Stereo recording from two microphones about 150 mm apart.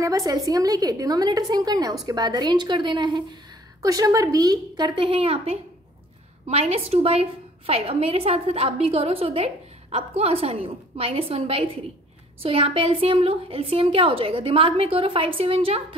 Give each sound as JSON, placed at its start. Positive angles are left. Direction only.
{"t": 0.0, "sound": "a woman's voice", "side_deg": -20}